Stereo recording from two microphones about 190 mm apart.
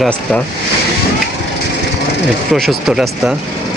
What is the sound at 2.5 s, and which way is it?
Speech, centre (ahead or behind).